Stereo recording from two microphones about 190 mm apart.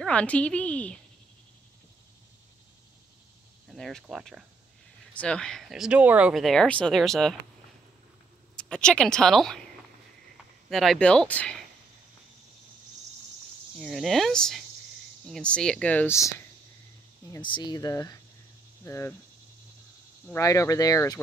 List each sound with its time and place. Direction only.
0.0 s speech: 5° left (ahead or behind)
3.6 s speech: centre (ahead or behind)
8.5 s speech: 5° left (ahead or behind)
10.7 s speech: centre (ahead or behind)
13.7 s speech: centre (ahead or behind)
20.3 s speech: 15° left (ahead or behind)